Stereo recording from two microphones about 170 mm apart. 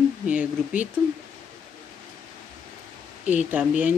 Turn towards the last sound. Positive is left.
turn(degrees=-10)  # may be behind; listen again after turning